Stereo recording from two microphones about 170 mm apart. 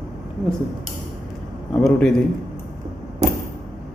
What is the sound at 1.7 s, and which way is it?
Speech, 5° left (ahead or behind).